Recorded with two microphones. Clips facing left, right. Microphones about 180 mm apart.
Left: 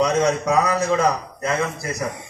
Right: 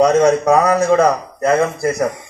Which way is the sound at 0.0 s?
50° right (ahead or behind).